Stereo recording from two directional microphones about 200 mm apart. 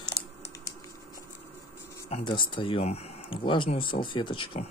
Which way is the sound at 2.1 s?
25° left (ahead or behind).